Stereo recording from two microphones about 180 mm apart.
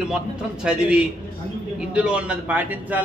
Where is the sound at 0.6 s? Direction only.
5° right (ahead or behind).